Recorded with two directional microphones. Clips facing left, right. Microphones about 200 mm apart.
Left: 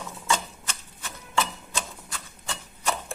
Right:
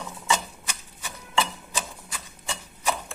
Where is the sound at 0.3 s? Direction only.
10° right (ahead or behind).